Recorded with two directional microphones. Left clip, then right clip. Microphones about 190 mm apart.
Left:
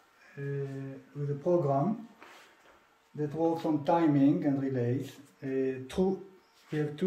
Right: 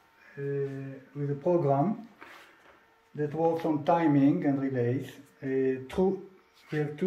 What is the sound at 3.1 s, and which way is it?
Speech, 25° right (ahead or behind).